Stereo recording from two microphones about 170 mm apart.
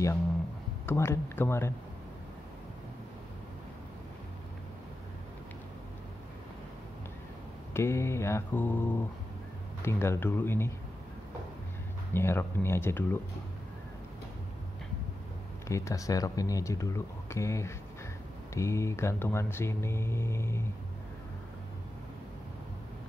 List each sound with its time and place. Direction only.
0.8 s speech: 15° left (ahead or behind)
7.7 s speech: 15° left (ahead or behind)
12.1 s speech: 15° left (ahead or behind)
15.7 s speech: 20° left (ahead or behind)